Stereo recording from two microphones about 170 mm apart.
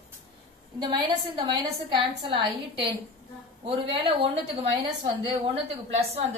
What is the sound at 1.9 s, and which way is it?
A woman's voice, 30° right (ahead or behind).